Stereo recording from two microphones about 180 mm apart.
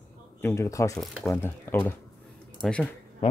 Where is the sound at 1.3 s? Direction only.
15° left (ahead or behind).